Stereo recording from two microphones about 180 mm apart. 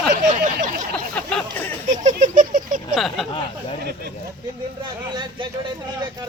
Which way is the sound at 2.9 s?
Centre (ahead or behind).